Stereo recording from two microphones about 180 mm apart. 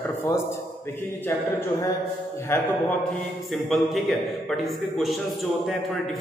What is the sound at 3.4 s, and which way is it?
A man's voice, centre (ahead or behind).